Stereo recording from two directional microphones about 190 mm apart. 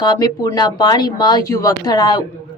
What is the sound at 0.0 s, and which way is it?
A woman's voice, 20° left (ahead or behind).